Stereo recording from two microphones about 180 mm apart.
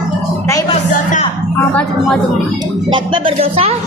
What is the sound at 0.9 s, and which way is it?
Speech, 45° left (ahead or behind).